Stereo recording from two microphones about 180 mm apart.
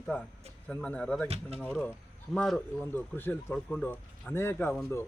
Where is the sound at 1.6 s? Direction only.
10° left (ahead or behind).